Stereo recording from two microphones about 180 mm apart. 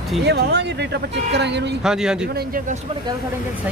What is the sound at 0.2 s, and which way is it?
Speech, 70° right (ahead or behind).